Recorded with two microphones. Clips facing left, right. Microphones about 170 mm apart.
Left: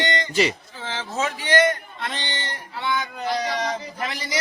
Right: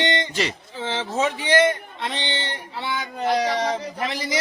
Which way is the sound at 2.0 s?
20° right (ahead or behind).